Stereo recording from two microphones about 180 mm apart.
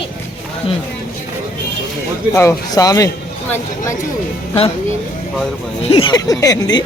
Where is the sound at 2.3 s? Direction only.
15° left (ahead or behind).